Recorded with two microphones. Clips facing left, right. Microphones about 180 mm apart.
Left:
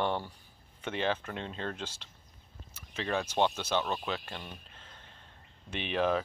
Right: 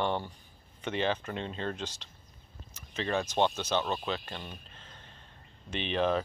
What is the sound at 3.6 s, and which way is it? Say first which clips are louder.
Speech: right 1 dB; 10° left (ahead or behind).